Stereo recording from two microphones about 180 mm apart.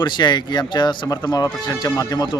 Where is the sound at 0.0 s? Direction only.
25° left (ahead or behind).